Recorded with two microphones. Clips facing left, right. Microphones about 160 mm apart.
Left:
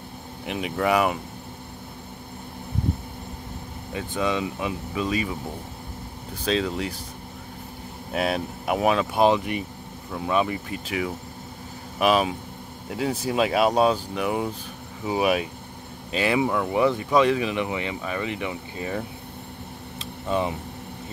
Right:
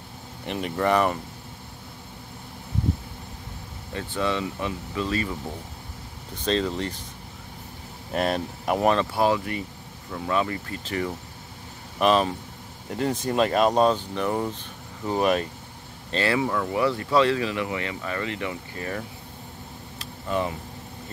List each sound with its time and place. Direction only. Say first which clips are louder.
0.5 s speech: even; 5° left (ahead or behind)
3.9 s speech: left 1 dB; 15° left (ahead or behind)
6.3 s speech: even; 5° left (ahead or behind)
8.1 s speech: even; 5° left (ahead or behind)
9.1 s speech: left 3 dB; 20° left (ahead or behind)
20.0 s a sound: left 2 dB; 20° left (ahead or behind)